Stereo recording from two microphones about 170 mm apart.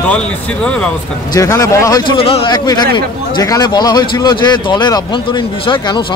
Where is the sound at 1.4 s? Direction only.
20° left (ahead or behind).